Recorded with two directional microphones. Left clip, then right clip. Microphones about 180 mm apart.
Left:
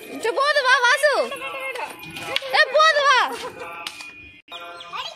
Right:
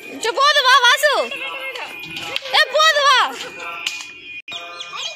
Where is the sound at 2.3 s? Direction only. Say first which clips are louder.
Right 1 dB; 5° left (ahead or behind).